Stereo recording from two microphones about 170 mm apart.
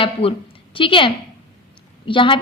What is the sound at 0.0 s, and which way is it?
A woman's voice, 35° left (ahead or behind).